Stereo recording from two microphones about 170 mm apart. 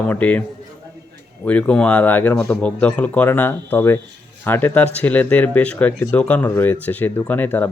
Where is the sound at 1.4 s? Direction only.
10° left (ahead or behind).